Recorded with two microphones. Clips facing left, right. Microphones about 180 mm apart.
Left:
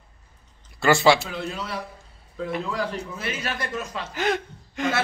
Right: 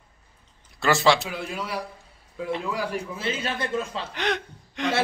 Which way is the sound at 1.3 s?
10° right (ahead or behind).